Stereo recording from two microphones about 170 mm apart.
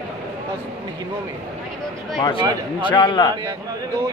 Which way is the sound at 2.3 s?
30° right (ahead or behind).